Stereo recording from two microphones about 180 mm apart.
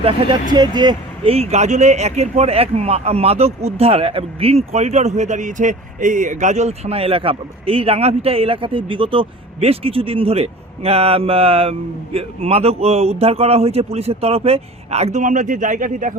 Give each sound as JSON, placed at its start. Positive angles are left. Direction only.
{"t": 0.0, "sound": "speech", "side_deg": -30}